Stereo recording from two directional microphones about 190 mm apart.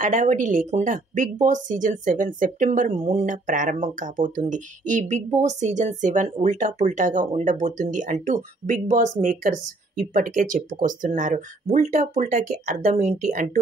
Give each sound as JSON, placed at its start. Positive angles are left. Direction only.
{"t": 0.0, "sound": "speech", "side_deg": -40}